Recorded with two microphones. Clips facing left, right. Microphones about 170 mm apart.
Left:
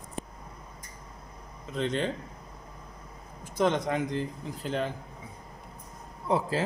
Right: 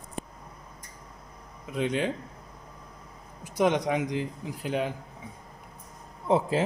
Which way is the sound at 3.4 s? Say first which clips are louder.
Right 2 dB; 15° right (ahead or behind).